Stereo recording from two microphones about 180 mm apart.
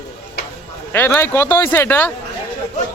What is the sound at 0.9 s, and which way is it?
Speech, 15° left (ahead or behind).